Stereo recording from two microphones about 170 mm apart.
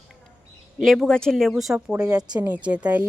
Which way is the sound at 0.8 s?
Centre (ahead or behind).